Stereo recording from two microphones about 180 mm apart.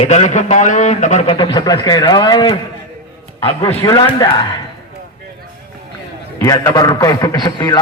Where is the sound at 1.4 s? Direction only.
20° left (ahead or behind).